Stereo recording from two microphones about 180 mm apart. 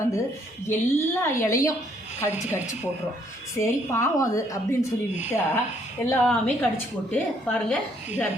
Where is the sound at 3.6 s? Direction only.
15° left (ahead or behind).